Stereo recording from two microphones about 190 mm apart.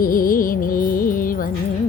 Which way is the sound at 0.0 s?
50° left (ahead or behind).